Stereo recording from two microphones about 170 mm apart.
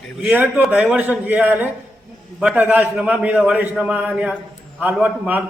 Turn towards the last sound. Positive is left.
turn(degrees=-10)  # may be behind; listen again after turning